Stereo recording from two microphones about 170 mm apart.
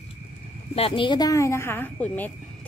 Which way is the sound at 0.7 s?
30° left (ahead or behind).